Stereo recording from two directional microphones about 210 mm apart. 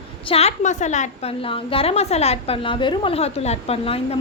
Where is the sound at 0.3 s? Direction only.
30° left (ahead or behind).